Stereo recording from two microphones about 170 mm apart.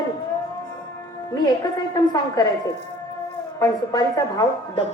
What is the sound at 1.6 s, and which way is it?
Speech, 20° left (ahead or behind).